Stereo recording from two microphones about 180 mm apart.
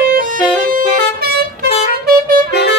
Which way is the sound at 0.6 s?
50° right (ahead or behind).